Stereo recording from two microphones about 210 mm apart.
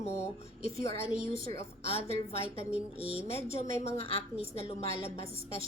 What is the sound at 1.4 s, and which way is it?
A woman's voice, 30° left (ahead or behind).